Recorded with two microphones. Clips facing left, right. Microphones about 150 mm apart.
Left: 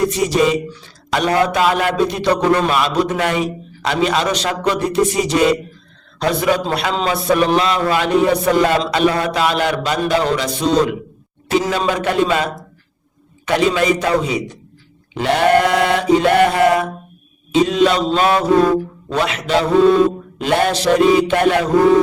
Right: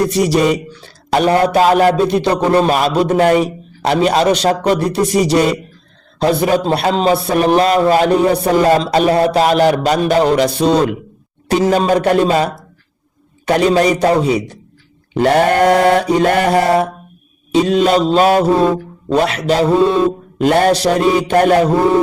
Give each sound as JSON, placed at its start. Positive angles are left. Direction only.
{"t": 1.1, "sound": "a man's voice", "side_deg": -40}
{"t": 15.2, "sound": "mantra", "side_deg": -45}
{"t": 17.5, "sound": "a man's voice", "side_deg": -40}